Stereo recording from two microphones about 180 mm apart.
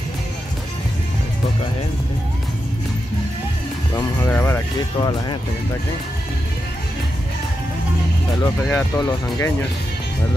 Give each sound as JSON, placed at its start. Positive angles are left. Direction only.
{"t": 3.9, "sound": "music", "side_deg": 20}
{"t": 4.9, "sound": "speech", "side_deg": 25}
{"t": 8.4, "sound": "speech", "side_deg": 15}